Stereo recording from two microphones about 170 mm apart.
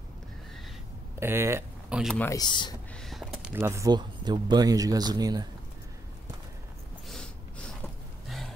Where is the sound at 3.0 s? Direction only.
5° right (ahead or behind); by 5.4 s 25° right (ahead or behind).